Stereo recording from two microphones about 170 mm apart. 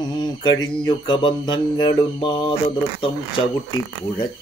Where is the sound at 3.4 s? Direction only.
30° left (ahead or behind).